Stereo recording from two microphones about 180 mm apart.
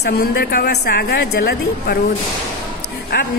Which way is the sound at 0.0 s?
60° left (ahead or behind).